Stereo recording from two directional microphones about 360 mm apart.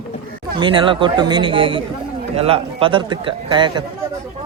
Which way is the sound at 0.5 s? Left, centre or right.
Centre.